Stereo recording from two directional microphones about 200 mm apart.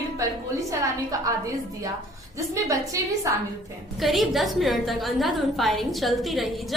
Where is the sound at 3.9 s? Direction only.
Centre (ahead or behind).